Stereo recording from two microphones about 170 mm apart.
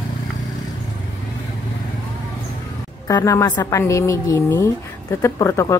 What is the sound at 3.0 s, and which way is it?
A woman's voice, 20° left (ahead or behind).